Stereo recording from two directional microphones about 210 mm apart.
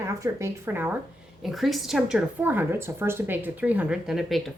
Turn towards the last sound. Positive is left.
turn(degrees=0)  # may be behind; listen again after turning